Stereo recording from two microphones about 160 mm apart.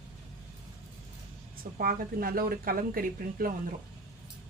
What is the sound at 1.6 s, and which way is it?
Speech, 65° right (ahead or behind).